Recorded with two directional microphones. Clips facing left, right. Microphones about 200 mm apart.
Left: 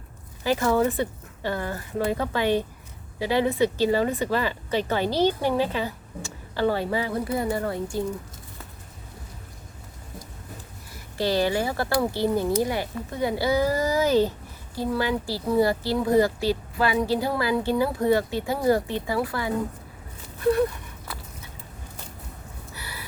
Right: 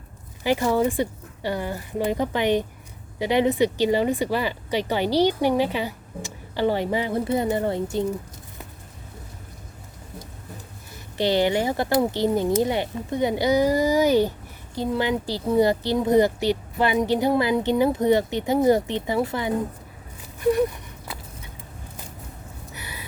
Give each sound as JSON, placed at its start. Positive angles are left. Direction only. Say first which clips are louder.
{"t": 0.4, "sound": "speech", "louder": "right 1 dB", "side_deg": -15}
{"t": 11.2, "sound": "a woman's voice", "louder": "right 2 dB", "side_deg": -20}
{"t": 20.4, "sound": "a sound", "louder": "right 1 dB", "side_deg": -15}
{"t": 22.7, "sound": "gasp", "louder": "right 1 dB", "side_deg": -20}